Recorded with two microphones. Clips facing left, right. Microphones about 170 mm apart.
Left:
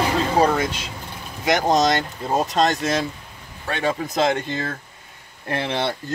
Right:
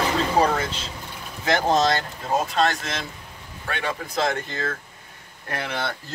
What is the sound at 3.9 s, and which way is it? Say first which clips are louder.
Speech: left 5 dB; 25° left (ahead or behind).